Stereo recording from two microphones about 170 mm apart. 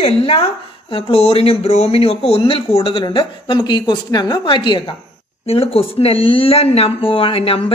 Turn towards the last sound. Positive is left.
turn(degrees=35)  # may be behind; listen again after turning